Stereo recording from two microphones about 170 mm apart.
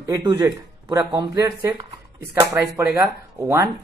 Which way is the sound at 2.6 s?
10° right (ahead or behind).